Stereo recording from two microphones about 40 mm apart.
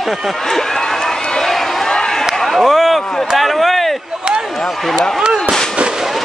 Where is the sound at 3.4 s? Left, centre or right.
Centre.